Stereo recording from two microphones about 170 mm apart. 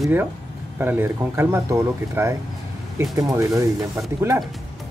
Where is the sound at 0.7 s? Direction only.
10° right (ahead or behind).